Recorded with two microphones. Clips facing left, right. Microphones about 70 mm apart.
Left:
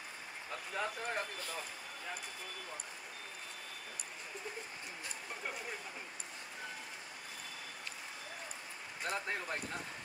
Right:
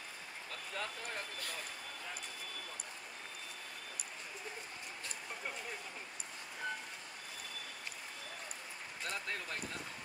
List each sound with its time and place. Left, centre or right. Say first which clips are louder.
0.5 s speech: left 4 dB; left
9.0 s speech: left 4 dB; left